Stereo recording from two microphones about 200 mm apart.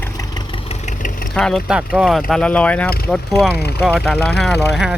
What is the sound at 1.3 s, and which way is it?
Speech, centre (ahead or behind).